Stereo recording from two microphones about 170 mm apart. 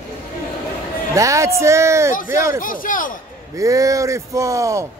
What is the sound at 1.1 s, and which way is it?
Speech, 20° right (ahead or behind).